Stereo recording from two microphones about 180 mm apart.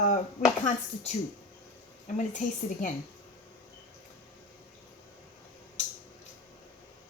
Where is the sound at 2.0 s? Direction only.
40° left (ahead or behind).